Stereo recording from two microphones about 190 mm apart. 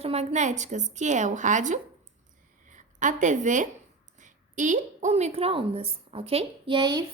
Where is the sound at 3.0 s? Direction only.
40° right (ahead or behind).